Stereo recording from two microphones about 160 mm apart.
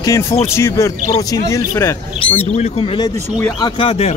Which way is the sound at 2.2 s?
40° left (ahead or behind).